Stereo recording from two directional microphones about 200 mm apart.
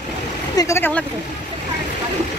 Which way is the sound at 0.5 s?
15° left (ahead or behind).